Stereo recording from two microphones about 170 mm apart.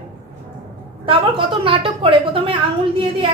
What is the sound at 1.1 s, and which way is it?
A woman's voice, 30° right (ahead or behind).